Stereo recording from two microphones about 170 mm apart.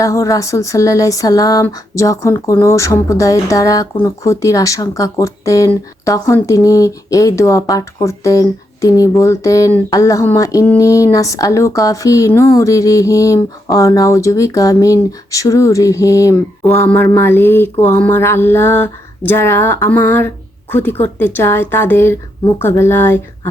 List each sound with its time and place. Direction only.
0.0 s speech: 20° left (ahead or behind)
16.7 s mantra: 15° left (ahead or behind)